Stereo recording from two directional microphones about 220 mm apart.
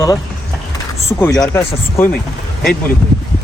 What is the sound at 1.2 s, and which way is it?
Speech, 15° left (ahead or behind).